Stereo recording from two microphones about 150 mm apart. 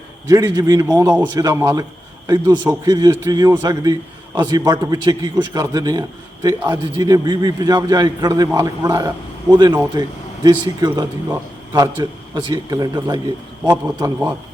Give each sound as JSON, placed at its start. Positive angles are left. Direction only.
{"t": 0.3, "sound": "a man's voice", "side_deg": -20}
{"t": 13.7, "sound": "a man's voice", "side_deg": -15}